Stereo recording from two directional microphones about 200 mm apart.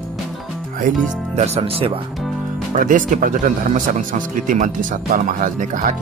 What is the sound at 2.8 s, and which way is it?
Speech, 40° right (ahead or behind).